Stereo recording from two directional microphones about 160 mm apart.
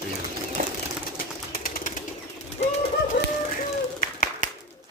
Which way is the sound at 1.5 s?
60° left (ahead or behind).